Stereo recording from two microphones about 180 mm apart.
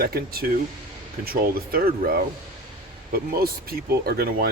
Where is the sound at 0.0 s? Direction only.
60° right (ahead or behind).